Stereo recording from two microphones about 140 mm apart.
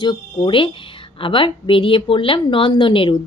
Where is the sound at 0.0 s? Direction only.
35° left (ahead or behind).